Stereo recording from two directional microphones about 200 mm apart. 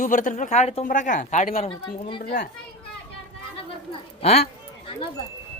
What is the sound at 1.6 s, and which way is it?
Speech, 25° left (ahead or behind).